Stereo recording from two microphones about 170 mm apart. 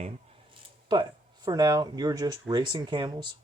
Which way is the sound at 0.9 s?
25° right (ahead or behind).